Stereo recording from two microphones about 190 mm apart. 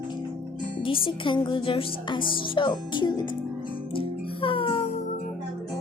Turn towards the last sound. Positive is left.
turn(degrees=30)  # may be behind; listen again after turning